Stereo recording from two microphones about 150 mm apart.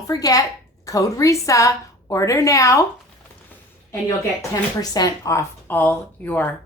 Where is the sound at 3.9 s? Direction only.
20° left (ahead or behind).